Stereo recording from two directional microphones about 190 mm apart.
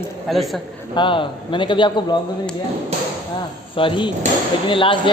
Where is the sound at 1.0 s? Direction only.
25° left (ahead or behind).